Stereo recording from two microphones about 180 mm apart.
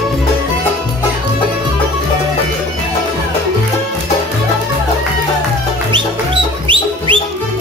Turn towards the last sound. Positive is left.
turn(degrees=-25)  # may be behind; listen again after turning